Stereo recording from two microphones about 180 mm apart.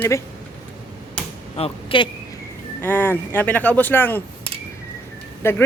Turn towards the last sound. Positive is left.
turn(degrees=10)  # may be behind; listen again after turning